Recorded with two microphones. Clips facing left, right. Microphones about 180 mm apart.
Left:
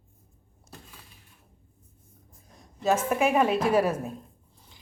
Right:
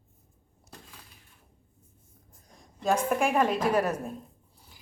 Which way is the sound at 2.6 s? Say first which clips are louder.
Left 2 dB; 5° left (ahead or behind).